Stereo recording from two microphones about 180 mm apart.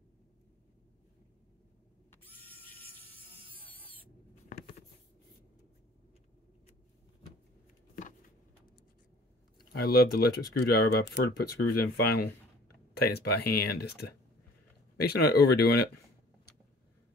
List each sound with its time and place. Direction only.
2.0 s a sound: 10° left (ahead or behind)
9.7 s speech: 60° left (ahead or behind)
15.0 s speech: 60° left (ahead or behind)